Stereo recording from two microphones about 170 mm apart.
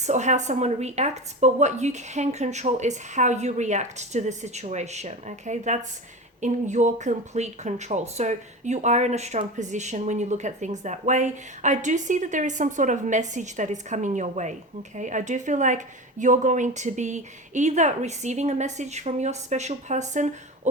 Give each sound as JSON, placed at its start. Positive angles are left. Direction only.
{"t": 0.0, "sound": "speech", "side_deg": -45}